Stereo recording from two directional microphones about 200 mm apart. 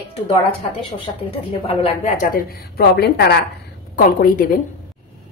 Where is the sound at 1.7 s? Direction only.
30° left (ahead or behind).